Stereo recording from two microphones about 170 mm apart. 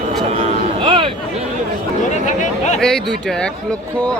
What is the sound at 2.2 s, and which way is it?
Chatter, 45° left (ahead or behind).